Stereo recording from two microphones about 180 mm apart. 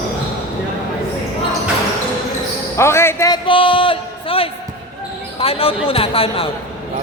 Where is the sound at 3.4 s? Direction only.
30° left (ahead or behind).